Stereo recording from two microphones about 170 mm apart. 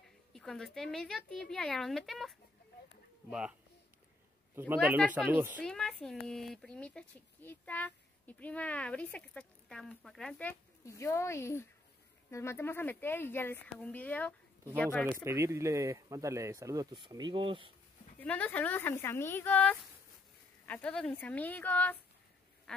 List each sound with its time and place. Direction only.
0.3 s a sound: 5° left (ahead or behind)
0.7 s speech: 5° left (ahead or behind)
4.6 s speech: 10° right (ahead or behind)
5.6 s speech: 5° left (ahead or behind)
10.9 s speech: 15° left (ahead or behind)
15.2 s speech: 15° right (ahead or behind)
18.2 s speech: 10° left (ahead or behind)
22.7 s quack: 5° left (ahead or behind)